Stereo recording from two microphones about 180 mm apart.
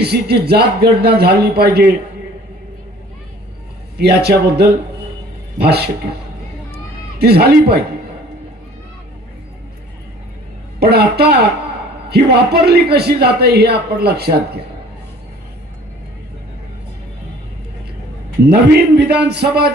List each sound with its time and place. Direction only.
0.0 s a man's voice: 65° right (ahead or behind)
3.9 s a man's voice: 65° right (ahead or behind)
7.2 s a man's voice: 60° right (ahead or behind)
10.8 s a man's voice: 65° right (ahead or behind)
18.4 s a man's voice: 65° right (ahead or behind)